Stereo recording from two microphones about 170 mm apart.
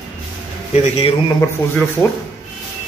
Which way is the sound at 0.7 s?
40° left (ahead or behind).